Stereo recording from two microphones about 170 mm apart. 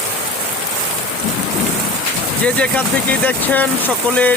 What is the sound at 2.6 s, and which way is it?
Speech, 5° left (ahead or behind).